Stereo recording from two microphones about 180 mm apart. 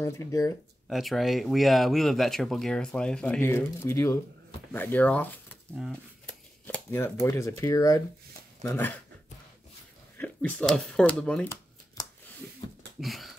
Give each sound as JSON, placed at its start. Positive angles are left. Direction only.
{"t": 0.0, "sound": "speech", "side_deg": 15}
{"t": 0.8, "sound": "speech", "side_deg": 0}
{"t": 10.1, "sound": "speech", "side_deg": 10}
{"t": 12.0, "sound": "scissors", "side_deg": 20}
{"t": 12.6, "sound": "a sound", "side_deg": 30}
{"t": 13.0, "sound": "sniff", "side_deg": 0}